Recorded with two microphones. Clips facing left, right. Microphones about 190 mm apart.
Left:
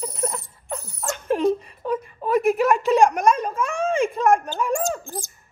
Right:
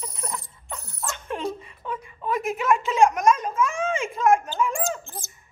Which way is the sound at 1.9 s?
35° left (ahead or behind).